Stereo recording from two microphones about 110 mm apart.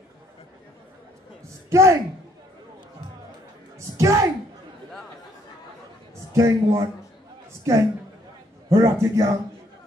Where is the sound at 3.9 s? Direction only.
30° right (ahead or behind).